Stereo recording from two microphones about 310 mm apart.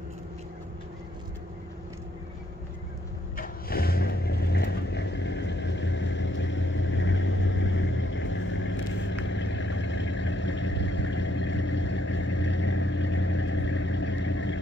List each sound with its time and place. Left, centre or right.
3.3 s vehicle: left